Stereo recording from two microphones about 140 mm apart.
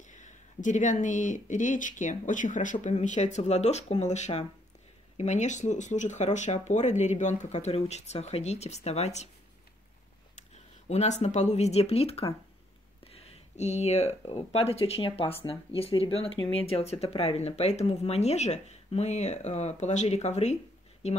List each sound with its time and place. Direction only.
0.1 s a sound: 60° left (ahead or behind)
1.0 s speech: 65° left (ahead or behind)
10.3 s speech: 55° left (ahead or behind)